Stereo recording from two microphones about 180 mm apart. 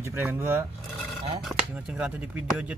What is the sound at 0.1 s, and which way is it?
Speech, 10° right (ahead or behind).